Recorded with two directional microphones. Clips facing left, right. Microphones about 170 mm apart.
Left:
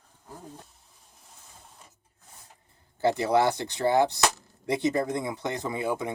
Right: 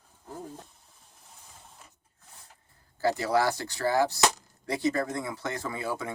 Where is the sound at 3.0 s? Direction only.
20° left (ahead or behind).